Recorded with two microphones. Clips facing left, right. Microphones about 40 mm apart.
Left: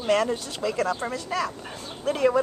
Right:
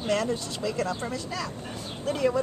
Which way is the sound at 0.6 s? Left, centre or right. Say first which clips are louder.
Left 5 dB; centre.